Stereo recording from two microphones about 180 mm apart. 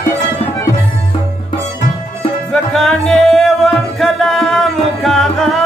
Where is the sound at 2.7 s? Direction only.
Centre (ahead or behind).